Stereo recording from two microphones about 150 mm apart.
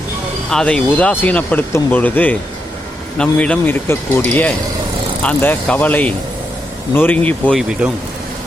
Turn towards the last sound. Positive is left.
turn(degrees=-5)  # may be behind; listen again after turning